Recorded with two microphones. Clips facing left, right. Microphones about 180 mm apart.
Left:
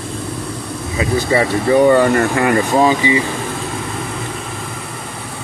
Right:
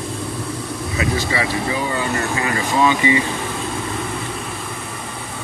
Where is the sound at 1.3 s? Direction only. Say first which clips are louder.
Left 8 dB; 50° left (ahead or behind).